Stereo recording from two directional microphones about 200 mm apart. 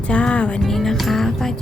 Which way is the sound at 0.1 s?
5° left (ahead or behind).